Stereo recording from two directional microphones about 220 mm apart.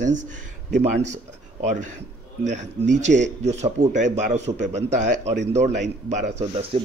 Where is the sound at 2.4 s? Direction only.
30° right (ahead or behind).